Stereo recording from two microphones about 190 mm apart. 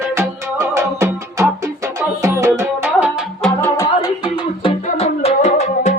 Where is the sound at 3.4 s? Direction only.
10° left (ahead or behind).